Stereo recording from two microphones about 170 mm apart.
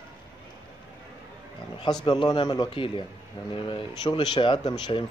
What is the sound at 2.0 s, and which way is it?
Speech, 25° left (ahead or behind).